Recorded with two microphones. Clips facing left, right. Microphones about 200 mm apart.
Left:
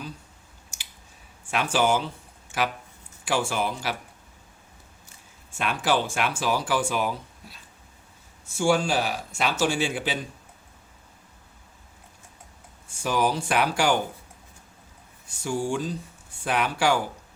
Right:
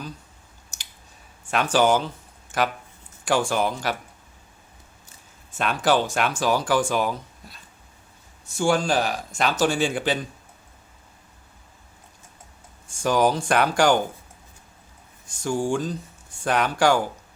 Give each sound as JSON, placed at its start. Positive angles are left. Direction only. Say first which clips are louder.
{"t": 0.7, "sound": "a sound", "louder": "right 1 dB", "side_deg": 10}
{"t": 1.5, "sound": "speech", "louder": "right 4 dB", "side_deg": 10}
{"t": 3.2, "sound": "speech", "louder": "right 4 dB", "side_deg": 10}
{"t": 5.5, "sound": "a sound", "louder": "right 3 dB", "side_deg": 10}
{"t": 5.8, "sound": "speech", "louder": "right 4 dB", "side_deg": 10}
{"t": 12.9, "sound": "speech", "louder": "right 4 dB", "side_deg": 5}
{"t": 15.3, "sound": "speech", "louder": "right 3 dB", "side_deg": 5}